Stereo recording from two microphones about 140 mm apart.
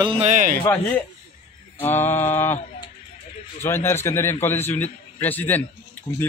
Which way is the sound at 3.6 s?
15° left (ahead or behind).